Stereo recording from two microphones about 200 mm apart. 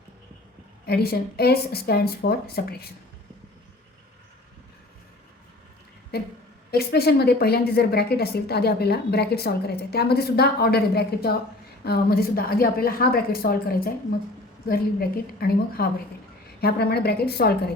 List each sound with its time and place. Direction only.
0.9 s a woman's voice: 50° left (ahead or behind)
6.1 s a woman's voice: 50° left (ahead or behind)